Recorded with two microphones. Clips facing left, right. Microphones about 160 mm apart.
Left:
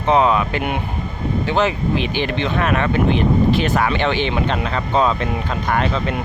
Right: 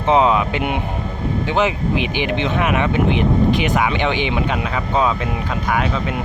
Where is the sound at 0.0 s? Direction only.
15° right (ahead or behind).